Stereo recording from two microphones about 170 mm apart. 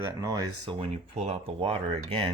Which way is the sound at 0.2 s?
20° right (ahead or behind).